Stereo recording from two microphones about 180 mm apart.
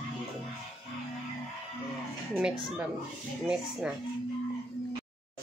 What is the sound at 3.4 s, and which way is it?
Speech, 5° right (ahead or behind).